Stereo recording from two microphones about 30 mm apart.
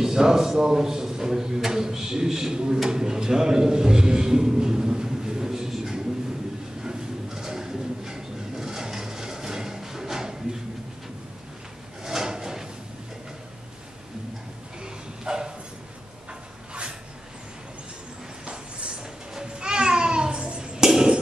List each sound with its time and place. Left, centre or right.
0.0 s a man's voice: centre
6.8 s pigeon: centre
12.0 s drawer open or close: centre
15.2 s bow-wow: right
19.3 s babbling: right
20.8 s a sound: centre